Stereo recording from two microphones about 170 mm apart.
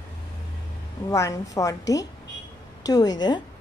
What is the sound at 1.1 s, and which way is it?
Speech, 20° left (ahead or behind).